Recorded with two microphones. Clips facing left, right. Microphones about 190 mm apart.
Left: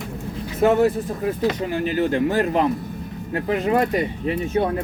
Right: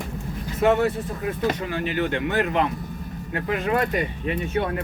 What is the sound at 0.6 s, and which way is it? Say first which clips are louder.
Speech: left 3 dB; 35° left (ahead or behind).